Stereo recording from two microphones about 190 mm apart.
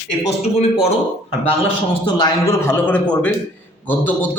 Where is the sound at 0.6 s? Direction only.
35° left (ahead or behind).